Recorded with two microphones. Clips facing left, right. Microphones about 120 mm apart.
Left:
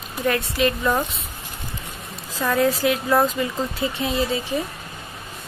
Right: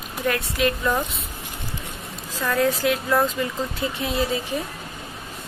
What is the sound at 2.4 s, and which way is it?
Speech, 10° left (ahead or behind).